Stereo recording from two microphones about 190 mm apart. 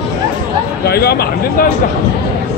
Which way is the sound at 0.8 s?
55° left (ahead or behind).